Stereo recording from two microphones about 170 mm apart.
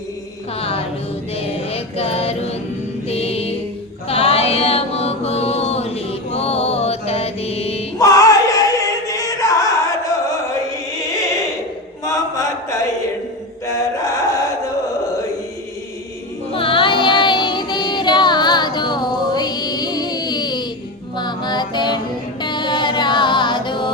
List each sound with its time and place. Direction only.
1.4 s music: 35° left (ahead or behind)
4.1 s mantra: 35° left (ahead or behind)
7.9 s music: 20° left (ahead or behind)
12.0 s chant: 20° left (ahead or behind)
16.5 s music: 30° left (ahead or behind)